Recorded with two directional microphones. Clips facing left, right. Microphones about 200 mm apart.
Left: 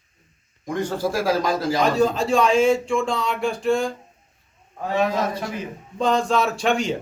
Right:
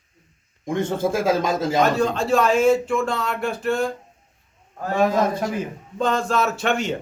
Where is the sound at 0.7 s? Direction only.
25° right (ahead or behind).